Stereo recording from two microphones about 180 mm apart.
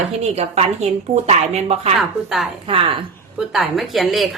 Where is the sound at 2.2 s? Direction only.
Centre (ahead or behind).